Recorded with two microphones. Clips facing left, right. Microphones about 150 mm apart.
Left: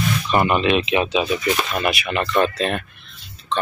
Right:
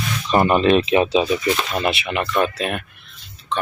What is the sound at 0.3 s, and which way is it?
Speech, 35° right (ahead or behind).